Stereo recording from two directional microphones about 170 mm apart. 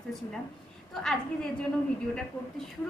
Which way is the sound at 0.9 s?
Centre (ahead or behind).